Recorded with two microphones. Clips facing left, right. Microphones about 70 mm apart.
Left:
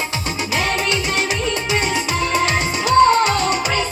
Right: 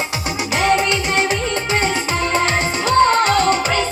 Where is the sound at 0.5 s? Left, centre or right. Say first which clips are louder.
Right 5 dB; right.